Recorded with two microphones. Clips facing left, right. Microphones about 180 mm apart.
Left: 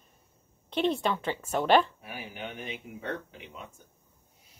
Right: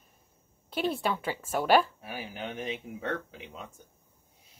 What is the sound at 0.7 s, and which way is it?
A woman's voice, 5° right (ahead or behind).